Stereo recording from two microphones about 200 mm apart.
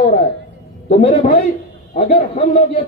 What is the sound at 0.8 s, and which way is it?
Speech, 40° left (ahead or behind).